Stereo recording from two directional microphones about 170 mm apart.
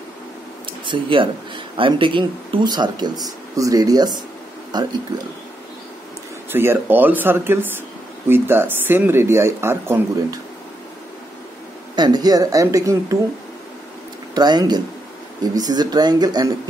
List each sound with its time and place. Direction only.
0.7 s speech: 30° right (ahead or behind)
6.5 s speech: 15° right (ahead or behind)
11.9 s speech: 25° right (ahead or behind)
14.3 s speech: 25° right (ahead or behind)